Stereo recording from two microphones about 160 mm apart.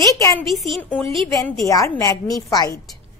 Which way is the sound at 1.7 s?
20° left (ahead or behind).